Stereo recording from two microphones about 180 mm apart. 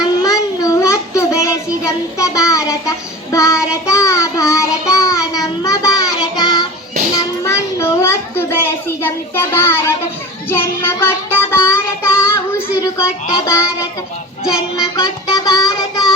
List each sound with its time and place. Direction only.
0.0 s child singing: 20° left (ahead or behind)
7.2 s a sound: 15° left (ahead or behind)
10.5 s child singing: 15° left (ahead or behind)
14.4 s child singing: 5° right (ahead or behind)
14.9 s music: 20° left (ahead or behind)